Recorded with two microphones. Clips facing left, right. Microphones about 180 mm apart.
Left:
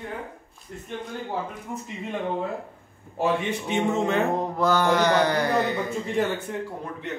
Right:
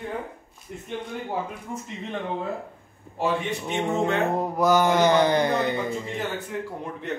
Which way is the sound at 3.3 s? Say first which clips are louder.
Left 1 dB; centre (ahead or behind).